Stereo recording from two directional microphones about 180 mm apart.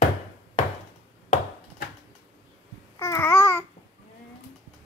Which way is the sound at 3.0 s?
15° left (ahead or behind).